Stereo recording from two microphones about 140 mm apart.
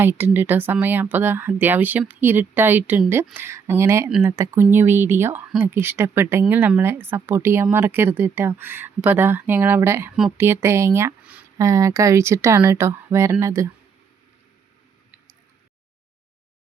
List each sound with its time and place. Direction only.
0.0 s a woman's voice: 15° right (ahead or behind)